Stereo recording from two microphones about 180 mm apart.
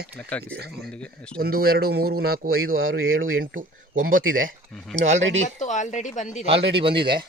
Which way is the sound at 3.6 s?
50° right (ahead or behind).